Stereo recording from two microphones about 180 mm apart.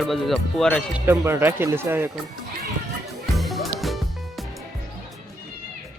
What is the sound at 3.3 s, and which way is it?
Music, centre (ahead or behind).